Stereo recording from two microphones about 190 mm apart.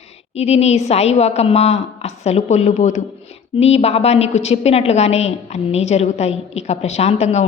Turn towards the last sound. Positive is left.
turn(degrees=35)  # may be behind; listen again after turning